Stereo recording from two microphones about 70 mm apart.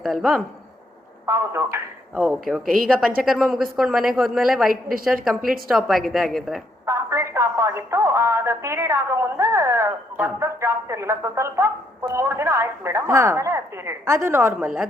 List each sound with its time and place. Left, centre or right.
0.0 s a woman's voice: centre
1.3 s speech: right
2.4 s a woman's voice: centre
6.8 s a woman's voice: right